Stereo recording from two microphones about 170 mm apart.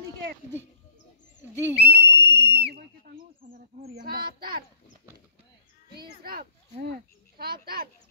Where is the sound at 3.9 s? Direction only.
65° right (ahead or behind).